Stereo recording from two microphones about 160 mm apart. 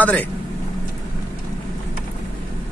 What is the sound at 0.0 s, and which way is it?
Speech, 10° left (ahead or behind).